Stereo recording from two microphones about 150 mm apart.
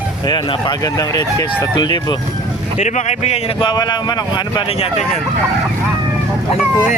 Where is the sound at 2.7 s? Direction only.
50° left (ahead or behind).